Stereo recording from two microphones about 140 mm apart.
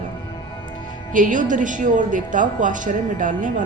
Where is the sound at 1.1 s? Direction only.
70° right (ahead or behind).